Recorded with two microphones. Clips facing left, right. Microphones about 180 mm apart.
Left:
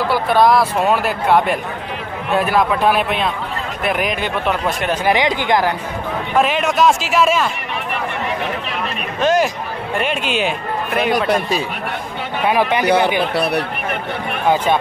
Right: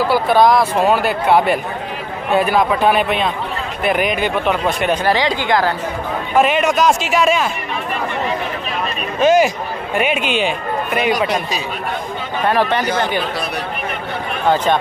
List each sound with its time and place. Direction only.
0.1 s speech: centre (ahead or behind)
5.0 s speech: 20° left (ahead or behind)
6.3 s speech: centre (ahead or behind)
9.2 s speech: centre (ahead or behind)
12.4 s speech: 10° left (ahead or behind)
12.8 s speech: 60° left (ahead or behind)